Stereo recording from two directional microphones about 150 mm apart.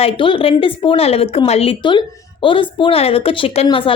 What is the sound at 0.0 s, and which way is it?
A woman's voice, 35° left (ahead or behind).